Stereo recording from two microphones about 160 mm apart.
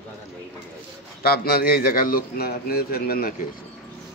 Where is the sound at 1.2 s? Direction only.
70° left (ahead or behind).